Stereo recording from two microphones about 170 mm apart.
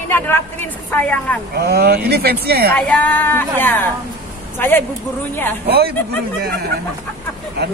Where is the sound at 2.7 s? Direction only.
10° left (ahead or behind).